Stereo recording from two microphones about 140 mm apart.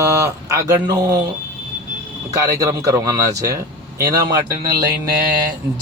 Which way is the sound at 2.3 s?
25° right (ahead or behind).